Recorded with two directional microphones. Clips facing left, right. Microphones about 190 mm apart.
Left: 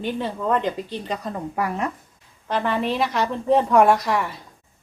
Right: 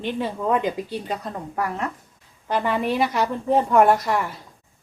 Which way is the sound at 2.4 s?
10° right (ahead or behind).